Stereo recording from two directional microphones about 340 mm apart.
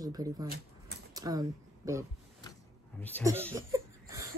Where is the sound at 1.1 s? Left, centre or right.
Centre.